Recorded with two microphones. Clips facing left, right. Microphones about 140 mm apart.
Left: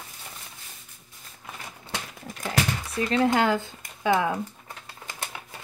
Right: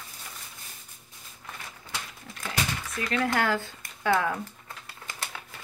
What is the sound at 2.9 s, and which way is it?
Speech, 25° left (ahead or behind).